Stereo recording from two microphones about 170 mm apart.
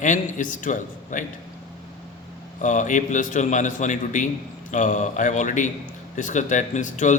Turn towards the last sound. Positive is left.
turn(degrees=45)  # may be behind; listen again after turning